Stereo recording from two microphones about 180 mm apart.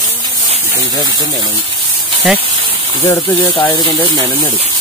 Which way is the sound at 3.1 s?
25° left (ahead or behind).